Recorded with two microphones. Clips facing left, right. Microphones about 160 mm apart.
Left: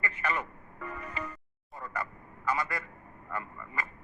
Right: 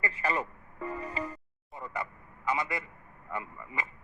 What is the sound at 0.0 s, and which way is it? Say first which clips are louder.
Music: right 2 dB; 35° right (ahead or behind).